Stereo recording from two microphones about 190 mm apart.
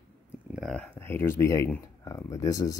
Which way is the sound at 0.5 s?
5° left (ahead or behind).